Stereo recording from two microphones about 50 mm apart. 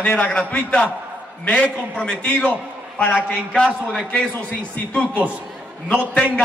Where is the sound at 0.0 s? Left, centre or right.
Left.